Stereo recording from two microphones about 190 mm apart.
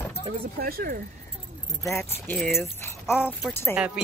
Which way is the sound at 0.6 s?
50° right (ahead or behind).